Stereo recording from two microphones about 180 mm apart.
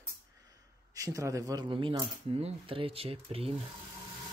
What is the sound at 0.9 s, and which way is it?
Speech, 20° right (ahead or behind).